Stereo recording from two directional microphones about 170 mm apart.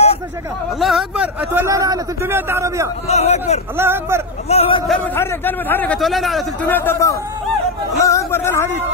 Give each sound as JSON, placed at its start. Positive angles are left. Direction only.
{"t": 0.7, "sound": "a man's voice", "side_deg": 0}
{"t": 3.1, "sound": "a man's voice", "side_deg": 40}
{"t": 3.7, "sound": "a man's voice", "side_deg": -15}
{"t": 4.5, "sound": "a man's voice", "side_deg": 35}
{"t": 4.8, "sound": "a man's voice", "side_deg": 10}
{"t": 5.9, "sound": "a man's voice", "side_deg": 0}
{"t": 6.7, "sound": "a man's voice", "side_deg": 10}